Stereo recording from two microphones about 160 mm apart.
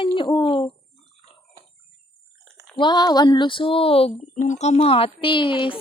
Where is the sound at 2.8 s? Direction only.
25° left (ahead or behind).